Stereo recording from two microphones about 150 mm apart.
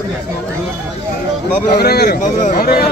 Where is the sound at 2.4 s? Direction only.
80° left.